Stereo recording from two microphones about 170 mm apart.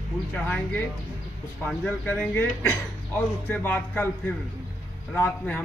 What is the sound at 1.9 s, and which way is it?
Speech, 10° left (ahead or behind).